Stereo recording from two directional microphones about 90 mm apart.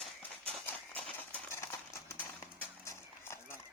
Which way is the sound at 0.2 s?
20° left (ahead or behind).